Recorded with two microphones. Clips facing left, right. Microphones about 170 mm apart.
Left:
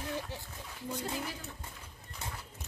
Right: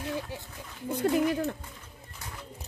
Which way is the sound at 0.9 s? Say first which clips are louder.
Right 14 dB; 60° right (ahead or behind).